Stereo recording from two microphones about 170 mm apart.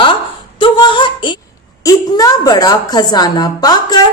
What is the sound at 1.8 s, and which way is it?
A woman's voice, 20° left (ahead or behind).